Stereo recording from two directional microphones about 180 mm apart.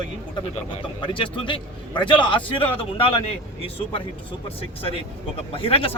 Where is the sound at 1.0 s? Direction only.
30° left (ahead or behind).